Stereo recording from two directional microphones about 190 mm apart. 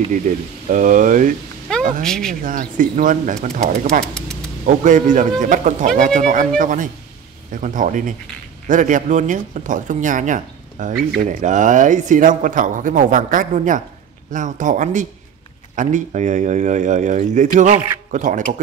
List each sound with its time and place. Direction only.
0.7 s speech: 45° right (ahead or behind)
1.7 s a sound: 5° left (ahead or behind)
2.0 s speech: 5° left (ahead or behind)
2.4 s speech: 45° right (ahead or behind)
4.1 s a sound: 5° left (ahead or behind)
4.6 s speech: 40° right (ahead or behind)